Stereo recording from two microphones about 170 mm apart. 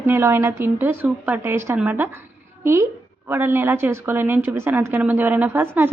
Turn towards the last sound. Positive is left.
turn(degrees=-10)  # may be behind; listen again after turning